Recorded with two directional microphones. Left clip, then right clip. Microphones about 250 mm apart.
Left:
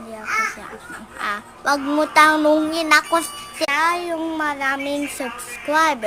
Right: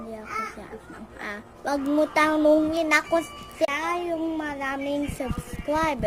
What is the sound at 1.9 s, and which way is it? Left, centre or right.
Child singing, centre.